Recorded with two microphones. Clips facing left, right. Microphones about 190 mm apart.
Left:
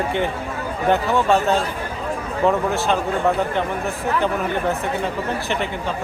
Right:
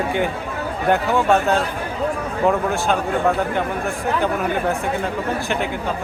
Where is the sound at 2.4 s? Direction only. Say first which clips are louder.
Even; 5° right (ahead or behind).